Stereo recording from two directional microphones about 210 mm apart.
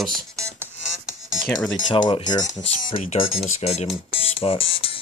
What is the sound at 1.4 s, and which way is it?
Speech, 5° left (ahead or behind).